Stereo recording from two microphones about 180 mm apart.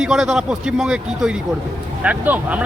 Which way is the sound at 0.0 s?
5° right (ahead or behind).